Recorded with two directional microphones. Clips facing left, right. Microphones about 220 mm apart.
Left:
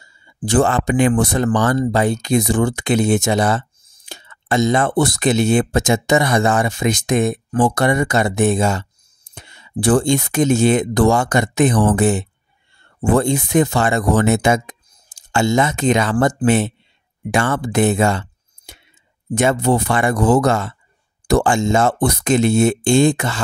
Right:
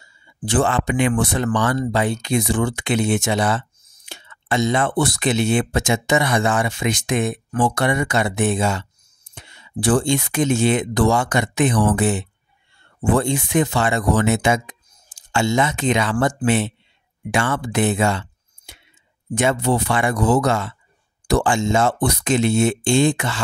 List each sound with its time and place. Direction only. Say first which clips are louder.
0.4 s speech: left 3 dB; 40° left (ahead or behind)